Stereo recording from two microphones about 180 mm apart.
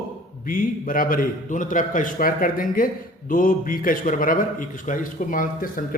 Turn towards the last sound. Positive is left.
turn(degrees=50)  # may be behind; listen again after turning